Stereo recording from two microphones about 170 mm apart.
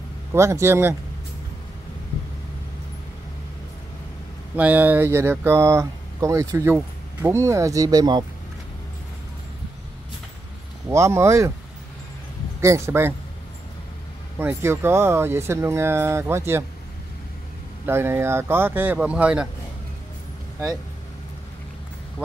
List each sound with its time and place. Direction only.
0.3 s speech: 15° right (ahead or behind)
4.6 s speech: 10° right (ahead or behind); by 8.3 s 25° right (ahead or behind)
10.9 s speech: 15° right (ahead or behind)
12.5 s speech: 15° right (ahead or behind)
14.4 s speech: 15° right (ahead or behind)
17.8 s speech: 15° right (ahead or behind)